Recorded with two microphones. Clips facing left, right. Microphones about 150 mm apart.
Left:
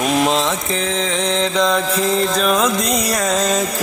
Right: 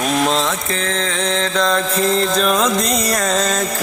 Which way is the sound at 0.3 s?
15° left (ahead or behind).